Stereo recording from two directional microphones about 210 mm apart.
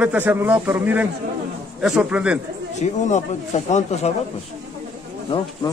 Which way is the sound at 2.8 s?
35° left (ahead or behind).